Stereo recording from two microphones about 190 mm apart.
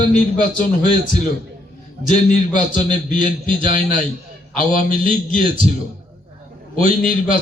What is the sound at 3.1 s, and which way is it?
Speech, 25° right (ahead or behind).